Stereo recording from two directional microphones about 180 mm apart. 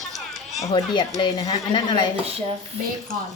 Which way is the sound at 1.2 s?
25° left (ahead or behind).